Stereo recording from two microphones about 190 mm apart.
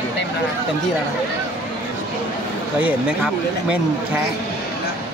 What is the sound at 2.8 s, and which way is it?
Speech, 5° right (ahead or behind).